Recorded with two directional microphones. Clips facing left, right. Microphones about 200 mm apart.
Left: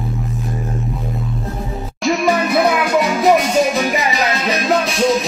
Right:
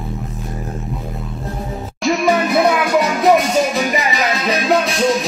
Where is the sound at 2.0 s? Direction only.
Centre (ahead or behind).